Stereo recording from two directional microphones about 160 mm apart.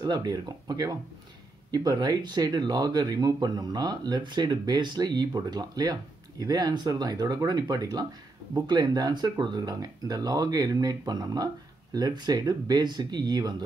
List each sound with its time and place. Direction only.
0.0 s speech: 25° right (ahead or behind)